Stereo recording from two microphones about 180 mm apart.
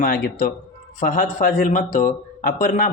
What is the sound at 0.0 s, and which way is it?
A man's voice, 50° left (ahead or behind).